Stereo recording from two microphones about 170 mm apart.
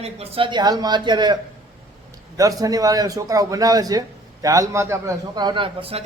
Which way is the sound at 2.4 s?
20° right (ahead or behind).